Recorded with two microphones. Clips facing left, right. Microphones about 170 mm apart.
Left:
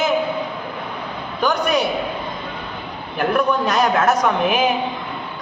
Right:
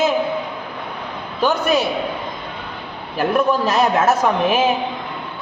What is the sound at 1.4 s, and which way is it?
Speech, 25° right (ahead or behind).